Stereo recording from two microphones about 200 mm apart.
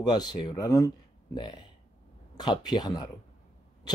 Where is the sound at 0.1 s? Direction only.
20° left (ahead or behind).